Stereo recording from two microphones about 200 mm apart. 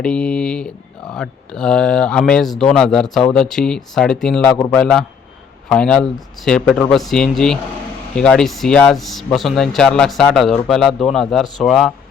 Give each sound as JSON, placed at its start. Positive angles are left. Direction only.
{"t": 0.0, "sound": "speech", "side_deg": 5}